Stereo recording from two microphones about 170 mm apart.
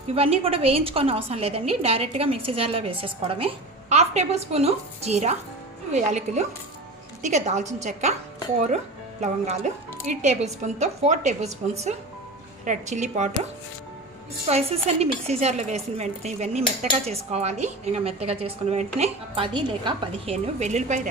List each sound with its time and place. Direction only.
0.1 s a woman's voice: 35° right (ahead or behind)